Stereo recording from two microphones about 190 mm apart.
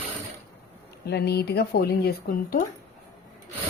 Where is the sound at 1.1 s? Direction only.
60° left (ahead or behind).